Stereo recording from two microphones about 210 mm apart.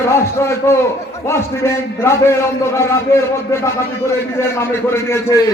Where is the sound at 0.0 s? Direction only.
15° left (ahead or behind).